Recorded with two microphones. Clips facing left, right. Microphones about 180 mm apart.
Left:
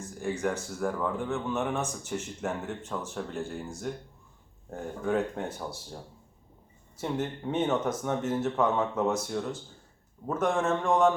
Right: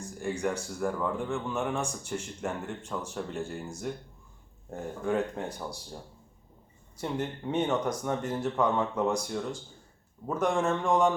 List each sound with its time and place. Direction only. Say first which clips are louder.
0.0 s a sound: left 1 dB; centre (ahead or behind)
0.7 s speech: even; centre (ahead or behind)
4.7 s speech: left 1 dB; centre (ahead or behind)